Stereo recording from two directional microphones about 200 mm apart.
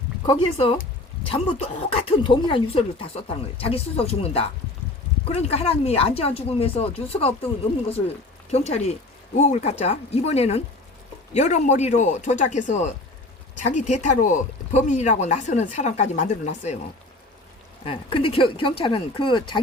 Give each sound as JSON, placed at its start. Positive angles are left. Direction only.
{"t": 0.2, "sound": "speech", "side_deg": 20}
{"t": 8.4, "sound": "speech", "side_deg": 30}
{"t": 17.8, "sound": "speech", "side_deg": 25}